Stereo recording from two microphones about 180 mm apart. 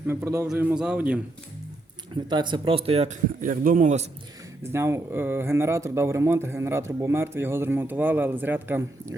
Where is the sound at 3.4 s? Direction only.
50° right (ahead or behind).